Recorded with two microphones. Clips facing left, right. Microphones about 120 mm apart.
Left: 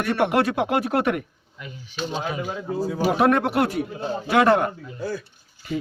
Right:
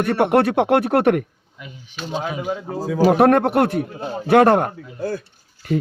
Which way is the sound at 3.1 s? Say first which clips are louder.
Right 5 dB; 50° right (ahead or behind).